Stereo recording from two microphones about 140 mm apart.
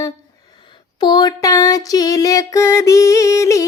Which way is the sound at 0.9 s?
30° left (ahead or behind).